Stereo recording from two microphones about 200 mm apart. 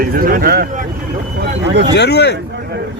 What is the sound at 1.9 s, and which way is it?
Speech, 55° left (ahead or behind).